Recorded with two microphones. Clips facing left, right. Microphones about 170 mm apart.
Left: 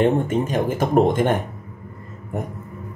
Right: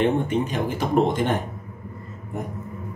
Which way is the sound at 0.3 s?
45° left (ahead or behind).